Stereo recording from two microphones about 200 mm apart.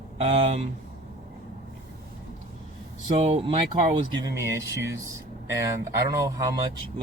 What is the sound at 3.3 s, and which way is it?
Speech, 30° right (ahead or behind).